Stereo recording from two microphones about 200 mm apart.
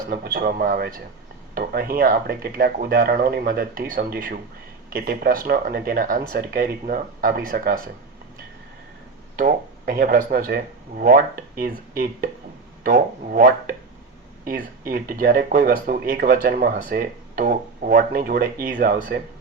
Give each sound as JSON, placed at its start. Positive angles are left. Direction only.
{"t": 0.1, "sound": "speech", "side_deg": -50}
{"t": 9.3, "sound": "speech", "side_deg": -45}